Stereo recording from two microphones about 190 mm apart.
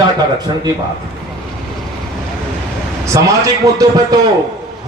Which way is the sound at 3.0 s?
15° right (ahead or behind).